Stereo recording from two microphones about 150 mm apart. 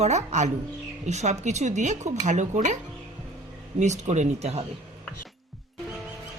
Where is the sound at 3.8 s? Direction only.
50° right (ahead or behind).